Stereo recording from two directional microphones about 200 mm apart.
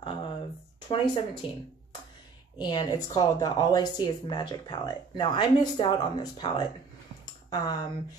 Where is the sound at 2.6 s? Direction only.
20° left (ahead or behind).